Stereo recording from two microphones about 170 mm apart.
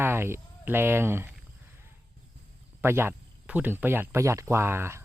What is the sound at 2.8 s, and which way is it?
Speech, 15° right (ahead or behind).